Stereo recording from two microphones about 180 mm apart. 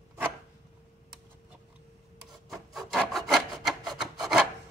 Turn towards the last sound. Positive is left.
turn(degrees=0)  # may be behind; listen again after turning